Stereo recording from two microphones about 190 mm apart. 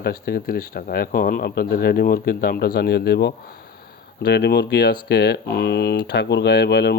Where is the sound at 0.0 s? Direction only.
55° left (ahead or behind).